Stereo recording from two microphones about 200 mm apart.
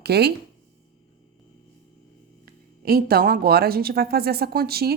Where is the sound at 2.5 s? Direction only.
50° right (ahead or behind).